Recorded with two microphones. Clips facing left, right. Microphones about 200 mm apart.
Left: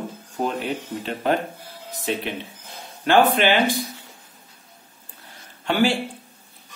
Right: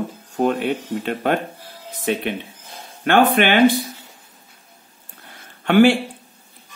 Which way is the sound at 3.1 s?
60° right (ahead or behind).